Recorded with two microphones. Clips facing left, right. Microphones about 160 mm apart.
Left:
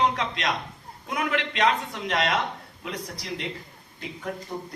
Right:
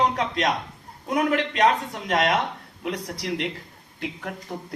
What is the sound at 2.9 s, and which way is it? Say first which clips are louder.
Speech: right 5 dB; 65° right (ahead or behind).